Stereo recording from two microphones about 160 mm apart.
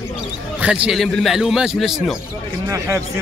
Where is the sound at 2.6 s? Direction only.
20° right (ahead or behind).